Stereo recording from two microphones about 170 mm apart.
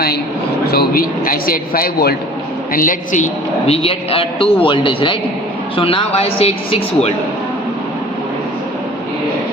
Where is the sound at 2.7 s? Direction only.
50° left (ahead or behind).